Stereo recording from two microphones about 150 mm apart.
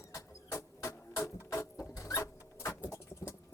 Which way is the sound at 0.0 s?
20° left (ahead or behind).